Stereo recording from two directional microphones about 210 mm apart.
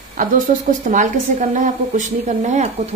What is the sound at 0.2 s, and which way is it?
Speech, 40° right (ahead or behind).